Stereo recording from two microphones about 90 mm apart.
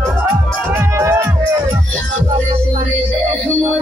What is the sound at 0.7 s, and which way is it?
Music, 25° right (ahead or behind).